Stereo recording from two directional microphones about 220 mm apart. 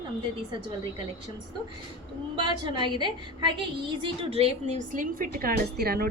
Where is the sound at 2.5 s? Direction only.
20° right (ahead or behind).